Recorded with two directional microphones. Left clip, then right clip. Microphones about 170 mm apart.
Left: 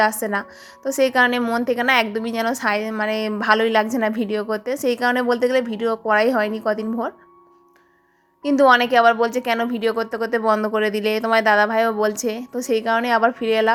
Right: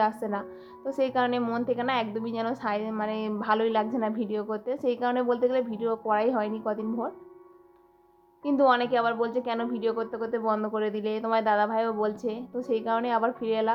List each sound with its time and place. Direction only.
0.0 s a woman's voice: 30° left (ahead or behind)
8.4 s a woman's voice: 30° left (ahead or behind)